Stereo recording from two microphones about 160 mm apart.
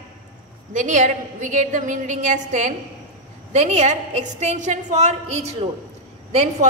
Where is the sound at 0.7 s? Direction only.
50° right (ahead or behind).